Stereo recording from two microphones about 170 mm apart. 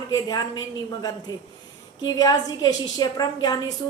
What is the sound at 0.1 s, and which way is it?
Speech, 25° left (ahead or behind).